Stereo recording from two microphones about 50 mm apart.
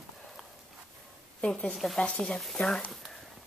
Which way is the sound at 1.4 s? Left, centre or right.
Left.